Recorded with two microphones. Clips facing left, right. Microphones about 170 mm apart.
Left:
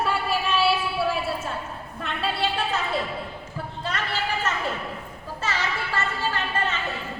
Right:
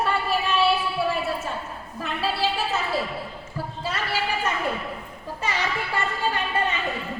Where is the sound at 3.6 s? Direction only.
5° right (ahead or behind).